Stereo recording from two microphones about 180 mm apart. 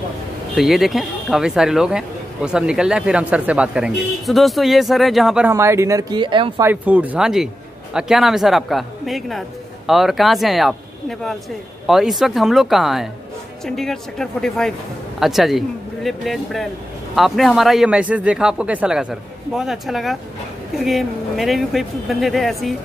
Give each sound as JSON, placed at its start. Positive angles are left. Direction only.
{"t": 0.6, "sound": "speech", "side_deg": 0}
{"t": 5.5, "sound": "speech", "side_deg": -15}
{"t": 6.6, "sound": "speech", "side_deg": -10}